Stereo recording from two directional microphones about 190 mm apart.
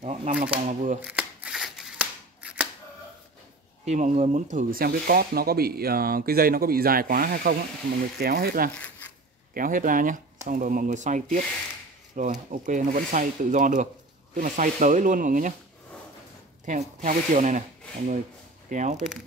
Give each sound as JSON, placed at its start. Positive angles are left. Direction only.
{"t": 0.0, "sound": "shuffling cards", "side_deg": -35}
{"t": 0.4, "sound": "speech", "side_deg": -45}
{"t": 1.0, "sound": "scissors", "side_deg": -5}
{"t": 3.8, "sound": "speech", "side_deg": -40}
{"t": 16.6, "sound": "speech", "side_deg": -40}